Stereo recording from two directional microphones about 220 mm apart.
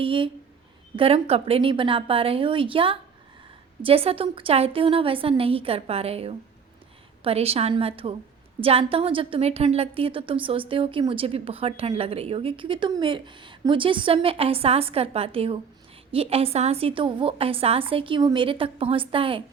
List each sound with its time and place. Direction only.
0.0 s a woman's voice: 25° right (ahead or behind)